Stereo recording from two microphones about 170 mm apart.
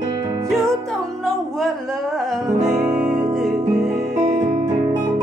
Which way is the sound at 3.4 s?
Centre (ahead or behind).